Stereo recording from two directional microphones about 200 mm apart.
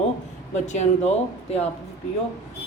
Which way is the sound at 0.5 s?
35° left (ahead or behind).